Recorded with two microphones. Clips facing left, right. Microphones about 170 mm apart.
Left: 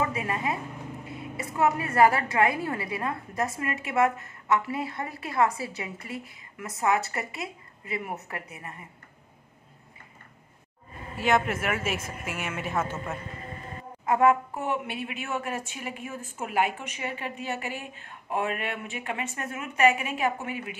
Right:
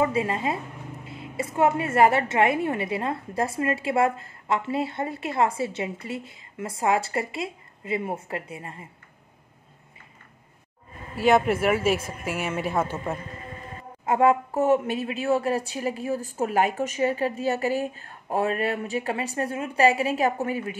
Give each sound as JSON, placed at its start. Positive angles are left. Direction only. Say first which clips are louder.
{"t": 0.0, "sound": "a woman's voice", "louder": "right 5 dB", "side_deg": -25}
{"t": 11.2, "sound": "a woman's voice", "louder": "right 6 dB", "side_deg": -35}
{"t": 14.0, "sound": "a woman's voice", "louder": "right 2 dB", "side_deg": -30}
{"t": 14.6, "sound": "a woman's voice", "louder": "right 9 dB", "side_deg": -40}